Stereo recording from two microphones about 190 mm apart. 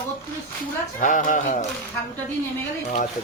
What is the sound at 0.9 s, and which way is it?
Speech, 40° left (ahead or behind).